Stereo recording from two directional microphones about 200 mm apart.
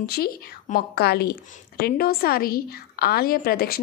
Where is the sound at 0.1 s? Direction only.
50° left (ahead or behind).